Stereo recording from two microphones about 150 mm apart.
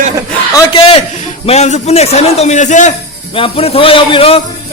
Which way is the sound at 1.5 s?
50° left (ahead or behind).